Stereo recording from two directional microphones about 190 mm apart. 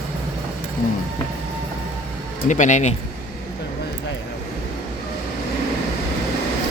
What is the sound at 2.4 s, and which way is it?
Speech, 40° left (ahead or behind).